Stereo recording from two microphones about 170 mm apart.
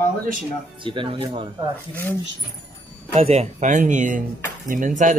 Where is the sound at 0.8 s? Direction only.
30° right (ahead or behind).